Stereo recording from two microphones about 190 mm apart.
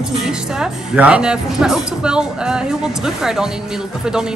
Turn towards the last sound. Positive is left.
turn(degrees=-5)  # may be behind; listen again after turning